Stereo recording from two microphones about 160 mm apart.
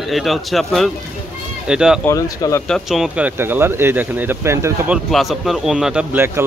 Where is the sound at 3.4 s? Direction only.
15° right (ahead or behind).